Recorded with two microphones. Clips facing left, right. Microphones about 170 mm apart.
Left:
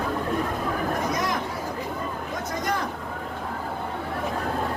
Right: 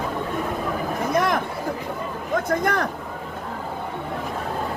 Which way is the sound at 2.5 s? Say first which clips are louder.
Right 4 dB; 60° right (ahead or behind).